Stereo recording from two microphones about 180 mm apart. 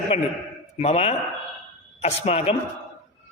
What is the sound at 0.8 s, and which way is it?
A woman's voice, 35° left (ahead or behind).